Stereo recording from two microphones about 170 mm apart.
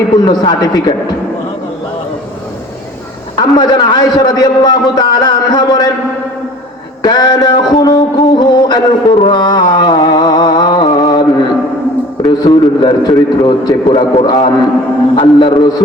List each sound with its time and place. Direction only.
0.3 s a man's voice: 25° left (ahead or behind)
3.3 s a man's voice: 25° left (ahead or behind)
7.0 s a man's voice: 25° left (ahead or behind)
7.7 s music: 25° left (ahead or behind)
12.2 s a man's voice: 25° left (ahead or behind)